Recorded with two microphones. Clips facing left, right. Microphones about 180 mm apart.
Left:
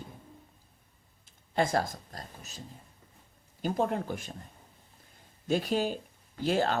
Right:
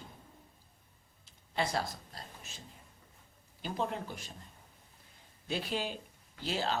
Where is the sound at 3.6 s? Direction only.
50° left (ahead or behind).